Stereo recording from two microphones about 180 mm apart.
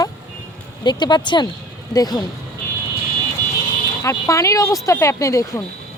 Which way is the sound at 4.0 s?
15° left (ahead or behind).